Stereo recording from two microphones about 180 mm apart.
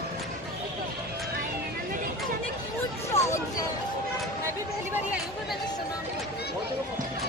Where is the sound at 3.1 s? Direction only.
35° left (ahead or behind).